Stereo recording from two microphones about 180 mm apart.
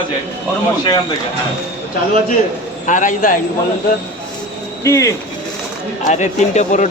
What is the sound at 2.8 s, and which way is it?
Speech, 45° left (ahead or behind).